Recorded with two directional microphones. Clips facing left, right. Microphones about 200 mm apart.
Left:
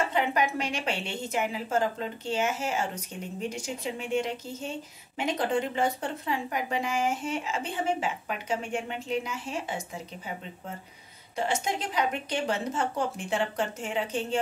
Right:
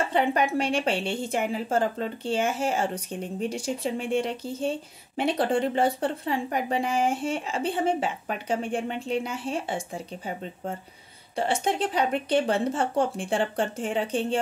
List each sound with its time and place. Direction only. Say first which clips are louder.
0.1 s a woman's voice: right 4 dB; 30° right (ahead or behind)
11.3 s a woman's voice: right 4 dB; 30° right (ahead or behind)